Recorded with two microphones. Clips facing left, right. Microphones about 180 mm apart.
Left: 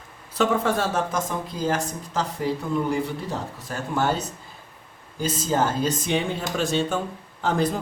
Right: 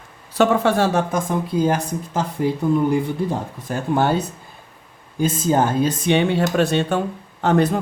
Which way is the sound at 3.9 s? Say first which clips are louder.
Right 5 dB; 55° right (ahead or behind).